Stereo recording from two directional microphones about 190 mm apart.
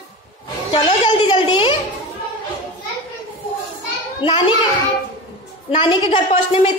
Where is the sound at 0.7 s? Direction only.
30° left (ahead or behind).